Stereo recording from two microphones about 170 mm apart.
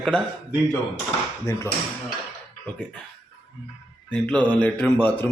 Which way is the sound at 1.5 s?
20° left (ahead or behind).